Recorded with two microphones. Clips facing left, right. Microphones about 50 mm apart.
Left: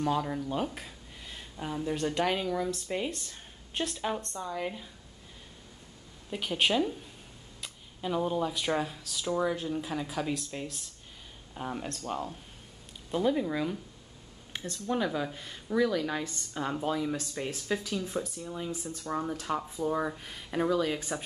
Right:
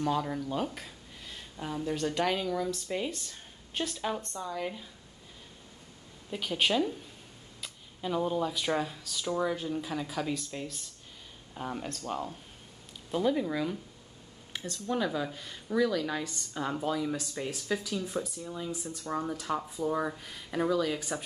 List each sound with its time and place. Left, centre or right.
0.0 s speech: centre
6.3 s speech: centre
14.9 s speech: centre
20.2 s speech: centre